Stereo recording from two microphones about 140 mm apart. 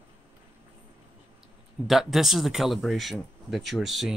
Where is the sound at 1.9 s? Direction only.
Centre (ahead or behind).